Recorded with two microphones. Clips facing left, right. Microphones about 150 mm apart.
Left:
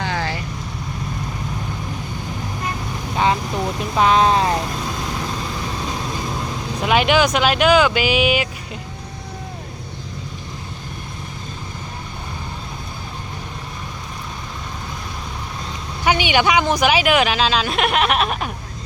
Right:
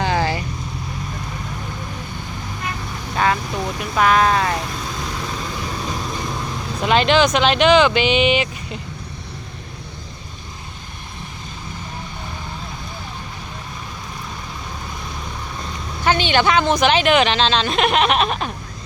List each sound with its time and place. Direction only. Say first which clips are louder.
0.0 s vehicle: right 4 dB; 15° right (ahead or behind)
3.8 s vehicle: left 1 dB; 25° left (ahead or behind)
6.8 s speech: right 1 dB; 10° left (ahead or behind)
16.0 s speech: even; 15° left (ahead or behind)